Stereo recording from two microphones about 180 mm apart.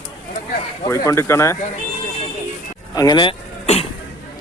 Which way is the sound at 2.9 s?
20° left (ahead or behind).